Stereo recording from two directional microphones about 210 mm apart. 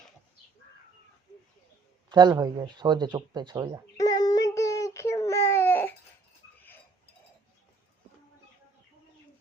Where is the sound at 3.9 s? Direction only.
15° left (ahead or behind).